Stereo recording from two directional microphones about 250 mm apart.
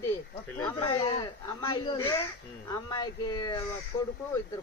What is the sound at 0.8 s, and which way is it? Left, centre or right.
Speech, centre.